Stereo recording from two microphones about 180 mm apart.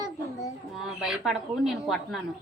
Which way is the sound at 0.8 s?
5° right (ahead or behind).